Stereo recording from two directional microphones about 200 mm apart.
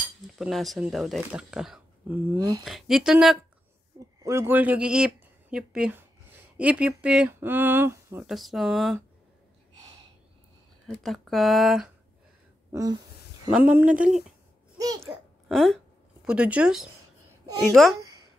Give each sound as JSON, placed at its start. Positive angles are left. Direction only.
{"t": 0.4, "sound": "speech", "side_deg": 0}
{"t": 2.3, "sound": "speech", "side_deg": -20}
{"t": 2.6, "sound": "speech", "side_deg": 0}
{"t": 4.2, "sound": "speech", "side_deg": -15}
{"t": 8.3, "sound": "speech", "side_deg": 0}
{"t": 10.9, "sound": "speech", "side_deg": 0}
{"t": 12.7, "sound": "speech", "side_deg": -20}
{"t": 13.5, "sound": "speech", "side_deg": -10}
{"t": 14.8, "sound": "a child's voice", "side_deg": -20}
{"t": 15.4, "sound": "hiccup", "side_deg": 0}
{"t": 16.3, "sound": "speech", "side_deg": -5}